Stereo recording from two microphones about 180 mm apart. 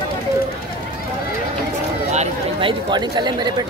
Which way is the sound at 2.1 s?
40° right (ahead or behind).